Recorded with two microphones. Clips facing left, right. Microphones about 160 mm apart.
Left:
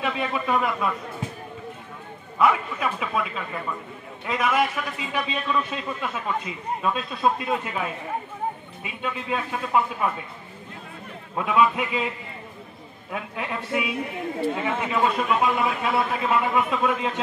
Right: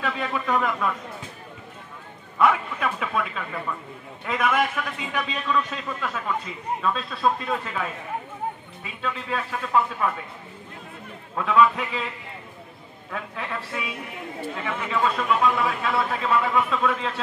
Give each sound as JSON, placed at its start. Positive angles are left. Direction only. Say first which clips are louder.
{"t": 0.0, "sound": "a man's voice", "louder": "left 1 dB", "side_deg": 10}
{"t": 2.3, "sound": "a man's voice", "louder": "even", "side_deg": 5}
{"t": 11.3, "sound": "a man's voice", "louder": "right 1 dB", "side_deg": 10}
{"t": 13.1, "sound": "a man's voice", "louder": "left 1 dB", "side_deg": 15}